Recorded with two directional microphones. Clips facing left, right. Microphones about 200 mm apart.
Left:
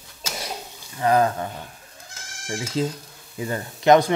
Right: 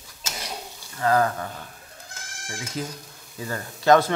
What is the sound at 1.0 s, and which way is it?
Speech, 20° left (ahead or behind).